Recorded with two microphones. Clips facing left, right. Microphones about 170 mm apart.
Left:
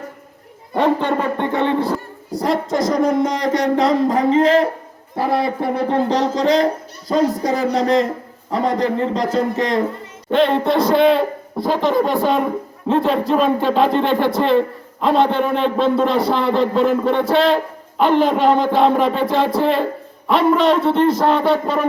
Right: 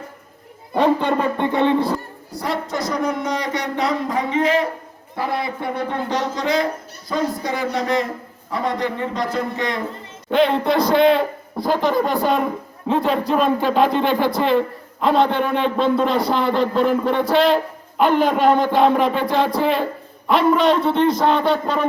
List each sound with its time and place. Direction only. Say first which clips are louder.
0.8 s a sound: even; 15° right (ahead or behind)
2.3 s speech: left 6 dB; 45° left (ahead or behind)
10.2 s a man's voice: left 1 dB; centre (ahead or behind)